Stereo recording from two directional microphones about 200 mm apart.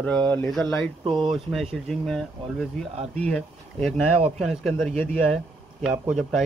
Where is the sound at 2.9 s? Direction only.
30° right (ahead or behind).